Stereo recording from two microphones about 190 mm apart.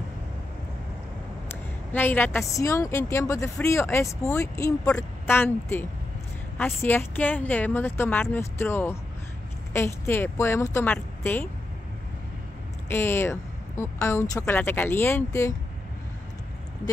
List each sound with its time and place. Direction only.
1.5 s a woman's voice: 10° left (ahead or behind)
12.8 s a woman's voice: 10° left (ahead or behind)